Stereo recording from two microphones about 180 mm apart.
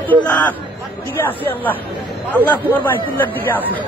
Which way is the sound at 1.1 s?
10° left (ahead or behind).